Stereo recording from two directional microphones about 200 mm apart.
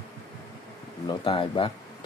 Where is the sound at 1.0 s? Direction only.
25° left (ahead or behind).